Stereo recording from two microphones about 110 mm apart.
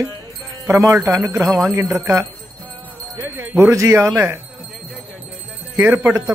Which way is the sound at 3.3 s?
20° right (ahead or behind).